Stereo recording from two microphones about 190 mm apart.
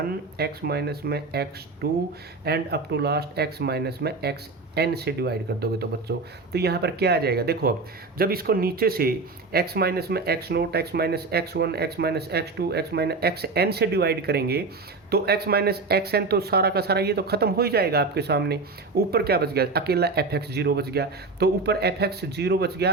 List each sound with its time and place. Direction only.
0.0 s speech: 55° right (ahead or behind)